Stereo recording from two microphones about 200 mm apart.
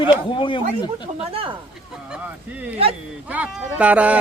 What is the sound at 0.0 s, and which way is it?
Speech, 25° left (ahead or behind).